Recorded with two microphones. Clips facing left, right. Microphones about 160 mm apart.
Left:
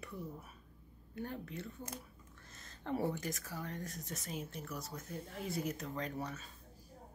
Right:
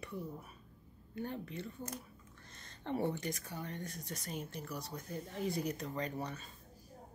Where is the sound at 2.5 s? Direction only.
5° left (ahead or behind).